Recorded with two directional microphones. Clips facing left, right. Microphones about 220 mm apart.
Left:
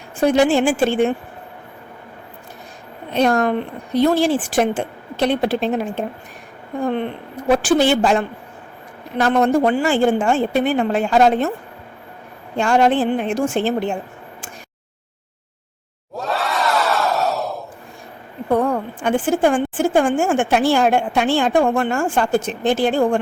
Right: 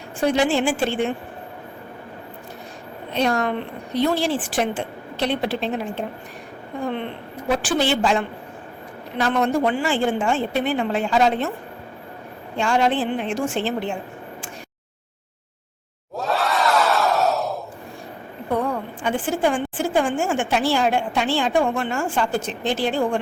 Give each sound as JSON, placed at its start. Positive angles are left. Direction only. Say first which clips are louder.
{"t": 0.3, "sound": "a woman's voice", "louder": "left 4 dB", "side_deg": 45}
{"t": 3.2, "sound": "a woman's voice", "louder": "left 5 dB", "side_deg": 50}
{"t": 7.5, "sound": "a woman's voice", "louder": "left 6 dB", "side_deg": 45}
{"t": 12.5, "sound": "a woman's voice", "louder": "left 4 dB", "side_deg": 45}
{"t": 16.1, "sound": "crowd", "louder": "even", "side_deg": 0}
{"t": 18.5, "sound": "a woman's voice", "louder": "left 5 dB", "side_deg": 50}